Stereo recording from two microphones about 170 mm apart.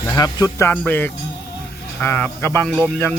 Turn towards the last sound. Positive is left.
turn(degrees=10)  # may be behind; listen again after turning